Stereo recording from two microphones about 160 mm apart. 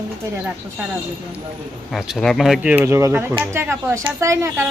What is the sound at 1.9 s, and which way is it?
A woman's voice, centre (ahead or behind).